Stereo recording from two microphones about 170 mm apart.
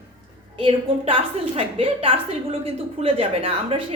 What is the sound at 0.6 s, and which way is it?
Speech, 30° right (ahead or behind).